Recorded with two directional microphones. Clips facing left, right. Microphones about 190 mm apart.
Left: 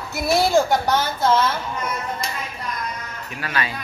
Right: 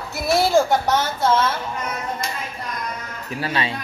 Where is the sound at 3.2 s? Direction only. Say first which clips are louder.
Right 3 dB; 30° right (ahead or behind).